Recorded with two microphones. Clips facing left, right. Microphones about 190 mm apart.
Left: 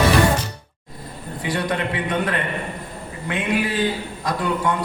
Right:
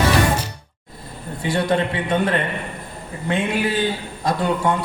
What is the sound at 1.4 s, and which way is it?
A man's voice, 25° right (ahead or behind).